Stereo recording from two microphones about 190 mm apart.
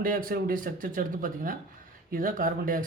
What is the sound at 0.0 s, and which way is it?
Speech, 50° right (ahead or behind).